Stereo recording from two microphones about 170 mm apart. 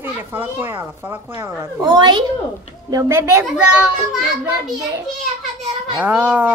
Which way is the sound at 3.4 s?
Centre (ahead or behind).